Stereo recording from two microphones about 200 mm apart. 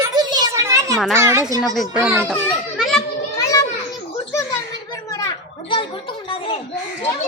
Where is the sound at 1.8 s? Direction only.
5° right (ahead or behind).